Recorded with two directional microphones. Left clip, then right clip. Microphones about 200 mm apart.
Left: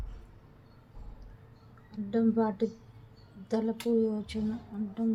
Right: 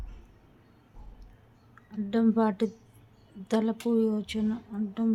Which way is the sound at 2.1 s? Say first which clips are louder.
Right 2 dB; 35° right (ahead or behind).